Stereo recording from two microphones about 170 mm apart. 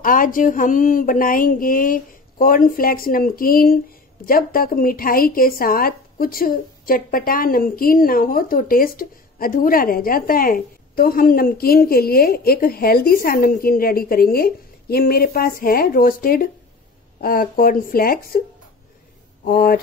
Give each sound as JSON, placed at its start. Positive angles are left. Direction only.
{"t": 0.0, "sound": "speech", "side_deg": 55}
{"t": 19.4, "sound": "speech", "side_deg": 60}